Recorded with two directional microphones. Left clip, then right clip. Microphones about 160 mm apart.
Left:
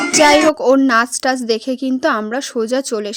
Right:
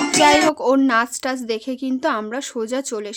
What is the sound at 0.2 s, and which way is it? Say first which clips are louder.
A woman's voice: left 4 dB; 30° left (ahead or behind).